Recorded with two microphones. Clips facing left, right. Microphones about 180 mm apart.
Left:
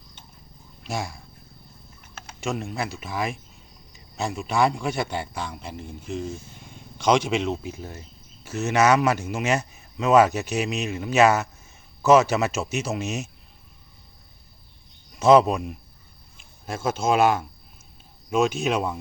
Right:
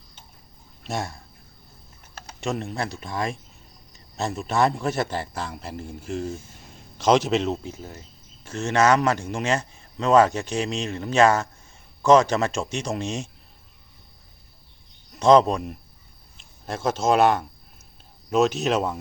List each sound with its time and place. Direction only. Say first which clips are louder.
0.9 s a man's voice: right 1 dB; centre (ahead or behind)
2.4 s a man's voice: right 1 dB; centre (ahead or behind)
7.6 s a man's voice: left 1 dB; 15° left (ahead or behind)
15.1 s a man's voice: even; 5° left (ahead or behind)